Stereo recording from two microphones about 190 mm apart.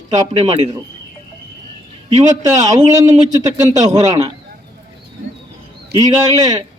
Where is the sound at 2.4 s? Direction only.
20° right (ahead or behind).